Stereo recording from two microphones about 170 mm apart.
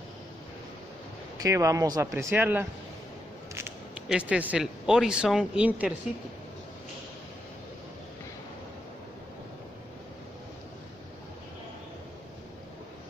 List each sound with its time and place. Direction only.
1.4 s speech: 20° right (ahead or behind)
3.5 s a sound: 15° right (ahead or behind)
4.1 s speech: 5° right (ahead or behind)